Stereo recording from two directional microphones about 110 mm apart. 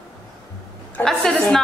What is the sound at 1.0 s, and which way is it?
Speech, 5° left (ahead or behind).